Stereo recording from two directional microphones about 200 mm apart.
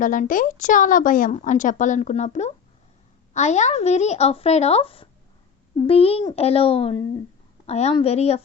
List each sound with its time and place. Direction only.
0.0 s a woman's voice: 40° left (ahead or behind)